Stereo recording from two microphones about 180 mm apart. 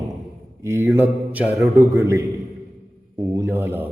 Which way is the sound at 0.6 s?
15° right (ahead or behind).